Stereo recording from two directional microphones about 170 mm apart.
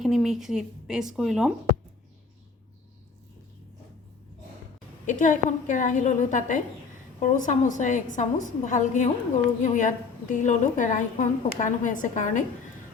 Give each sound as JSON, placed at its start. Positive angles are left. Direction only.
{"t": 0.0, "sound": "a woman's voice", "side_deg": 0}
{"t": 5.0, "sound": "a woman's voice", "side_deg": 45}